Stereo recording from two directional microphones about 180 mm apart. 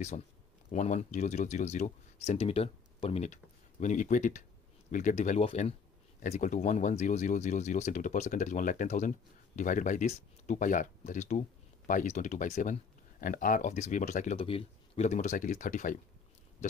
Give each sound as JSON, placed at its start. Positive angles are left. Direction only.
{"t": 0.7, "sound": "speech", "side_deg": 40}